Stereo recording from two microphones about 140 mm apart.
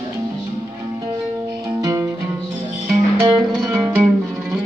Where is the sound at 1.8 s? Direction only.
20° right (ahead or behind).